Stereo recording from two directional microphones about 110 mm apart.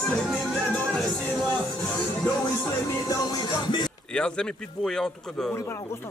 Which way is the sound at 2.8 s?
30° left (ahead or behind).